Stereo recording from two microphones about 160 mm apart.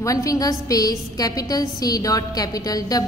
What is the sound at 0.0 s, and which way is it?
A woman's voice, 20° left (ahead or behind).